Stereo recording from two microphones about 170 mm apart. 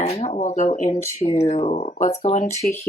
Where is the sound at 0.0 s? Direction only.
40° left (ahead or behind).